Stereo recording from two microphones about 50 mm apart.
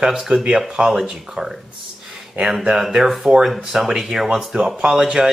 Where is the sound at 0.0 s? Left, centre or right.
Centre.